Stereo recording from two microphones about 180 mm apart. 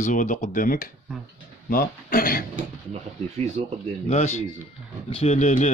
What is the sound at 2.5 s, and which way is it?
Speech, 35° right (ahead or behind).